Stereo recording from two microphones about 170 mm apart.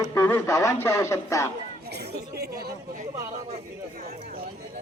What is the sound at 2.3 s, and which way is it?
Speech, 65° right (ahead or behind).